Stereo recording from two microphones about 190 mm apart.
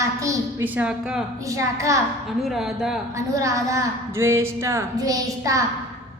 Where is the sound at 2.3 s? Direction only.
Centre (ahead or behind).